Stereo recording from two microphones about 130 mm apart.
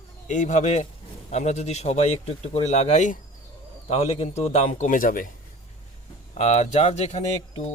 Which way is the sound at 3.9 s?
50° left (ahead or behind).